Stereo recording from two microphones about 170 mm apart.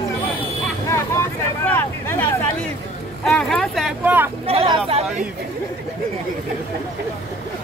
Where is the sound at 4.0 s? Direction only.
10° right (ahead or behind).